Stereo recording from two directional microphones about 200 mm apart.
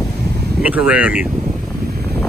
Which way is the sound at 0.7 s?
5° right (ahead or behind).